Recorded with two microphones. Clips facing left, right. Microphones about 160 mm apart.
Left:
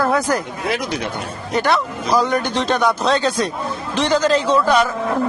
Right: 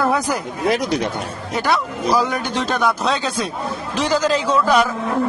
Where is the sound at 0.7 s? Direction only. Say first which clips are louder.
Right 4 dB; 40° right (ahead or behind).